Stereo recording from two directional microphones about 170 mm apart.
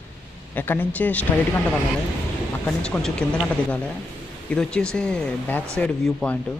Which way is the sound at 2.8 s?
5° left (ahead or behind).